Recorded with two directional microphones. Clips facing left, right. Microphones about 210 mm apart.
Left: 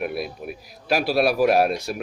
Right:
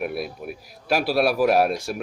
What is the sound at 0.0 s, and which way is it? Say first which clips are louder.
Speech: even; centre (ahead or behind).